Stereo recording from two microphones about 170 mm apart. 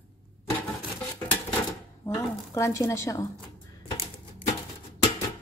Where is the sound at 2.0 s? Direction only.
15° left (ahead or behind).